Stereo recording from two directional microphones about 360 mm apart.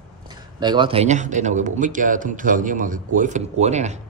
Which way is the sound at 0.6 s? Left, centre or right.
Centre.